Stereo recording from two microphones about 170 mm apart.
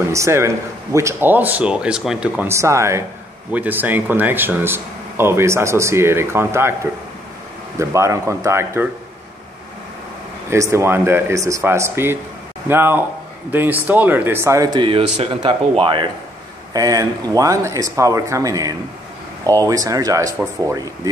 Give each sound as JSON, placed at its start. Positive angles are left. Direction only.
{"t": 0.0, "sound": "a man's voice", "side_deg": -15}
{"t": 10.5, "sound": "speech", "side_deg": -15}